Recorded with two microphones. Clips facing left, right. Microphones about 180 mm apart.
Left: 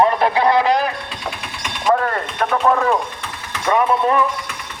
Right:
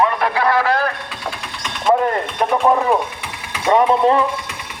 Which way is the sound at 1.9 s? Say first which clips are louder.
Right 2 dB; 20° right (ahead or behind).